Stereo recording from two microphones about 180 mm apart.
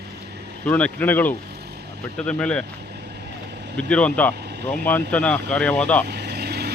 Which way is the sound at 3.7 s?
5° left (ahead or behind).